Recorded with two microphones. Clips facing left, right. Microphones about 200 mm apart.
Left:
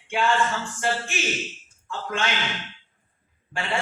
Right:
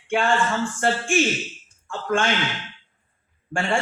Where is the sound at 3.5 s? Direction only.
50° right (ahead or behind).